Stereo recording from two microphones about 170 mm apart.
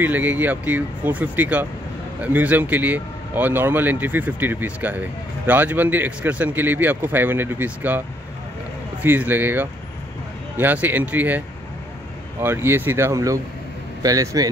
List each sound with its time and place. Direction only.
0.0 s speech: 10° right (ahead or behind)
9.0 s speech: 10° right (ahead or behind)